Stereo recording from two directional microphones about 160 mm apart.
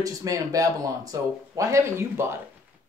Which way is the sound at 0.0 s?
20° right (ahead or behind).